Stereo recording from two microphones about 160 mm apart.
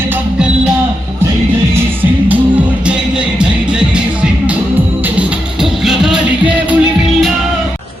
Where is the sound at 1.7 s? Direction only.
10° right (ahead or behind).